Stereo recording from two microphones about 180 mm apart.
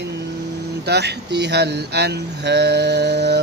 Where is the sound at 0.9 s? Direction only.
65° right (ahead or behind).